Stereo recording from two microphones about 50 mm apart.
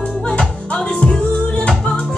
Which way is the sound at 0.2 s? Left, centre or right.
Left.